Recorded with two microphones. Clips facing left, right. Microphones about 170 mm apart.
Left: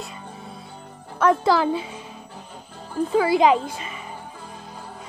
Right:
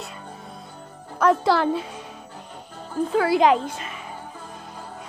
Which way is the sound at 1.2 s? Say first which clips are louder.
Even; centre (ahead or behind).